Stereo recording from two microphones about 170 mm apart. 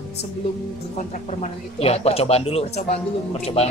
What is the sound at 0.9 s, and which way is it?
Speech, 45° left (ahead or behind).